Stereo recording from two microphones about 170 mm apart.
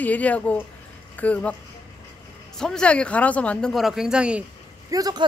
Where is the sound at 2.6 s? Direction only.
5° left (ahead or behind).